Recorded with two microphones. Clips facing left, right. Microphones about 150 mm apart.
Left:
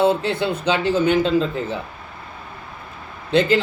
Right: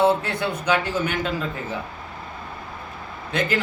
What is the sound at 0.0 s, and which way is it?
Speech, 25° left (ahead or behind).